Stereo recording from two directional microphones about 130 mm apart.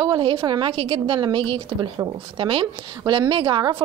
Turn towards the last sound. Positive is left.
turn(degrees=-35)  # may be behind; listen again after turning